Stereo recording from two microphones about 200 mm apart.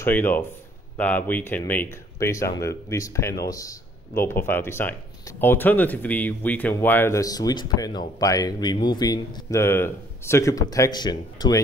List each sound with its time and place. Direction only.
0.0 s speech: 10° left (ahead or behind)